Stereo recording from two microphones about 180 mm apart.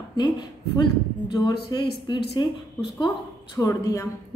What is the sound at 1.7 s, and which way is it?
A woman's voice, 20° left (ahead or behind).